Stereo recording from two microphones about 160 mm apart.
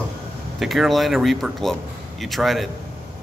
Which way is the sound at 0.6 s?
Centre (ahead or behind).